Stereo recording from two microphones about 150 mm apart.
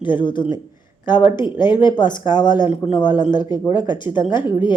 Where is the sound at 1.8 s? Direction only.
30° left (ahead or behind).